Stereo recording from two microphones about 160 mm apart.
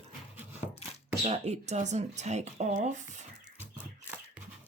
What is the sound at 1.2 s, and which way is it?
Speech, 45° right (ahead or behind).